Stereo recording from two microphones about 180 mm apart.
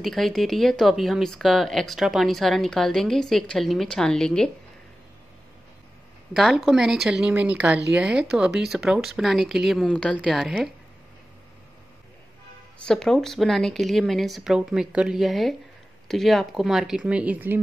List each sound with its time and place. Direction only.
0.0 s speech: centre (ahead or behind)
6.3 s speech: centre (ahead or behind)
12.7 s speech: 5° left (ahead or behind)